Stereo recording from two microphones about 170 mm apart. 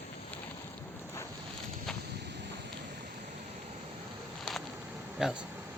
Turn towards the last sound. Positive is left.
turn(degrees=-5)  # may be behind; listen again after turning